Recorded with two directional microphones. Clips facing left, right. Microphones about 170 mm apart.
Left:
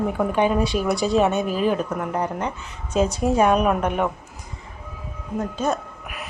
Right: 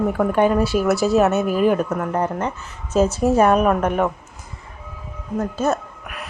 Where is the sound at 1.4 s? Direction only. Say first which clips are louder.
Right 4 dB; 50° right (ahead or behind).